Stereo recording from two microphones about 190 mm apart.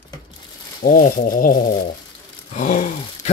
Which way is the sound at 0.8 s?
50° left (ahead or behind).